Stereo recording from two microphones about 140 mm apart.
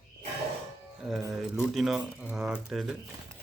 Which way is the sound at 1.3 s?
5° right (ahead or behind).